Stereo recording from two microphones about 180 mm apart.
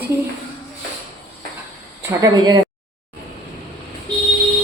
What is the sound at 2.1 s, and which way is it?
Speech, 20° right (ahead or behind).